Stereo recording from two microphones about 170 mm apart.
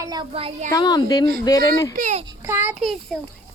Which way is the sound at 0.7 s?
20° left (ahead or behind).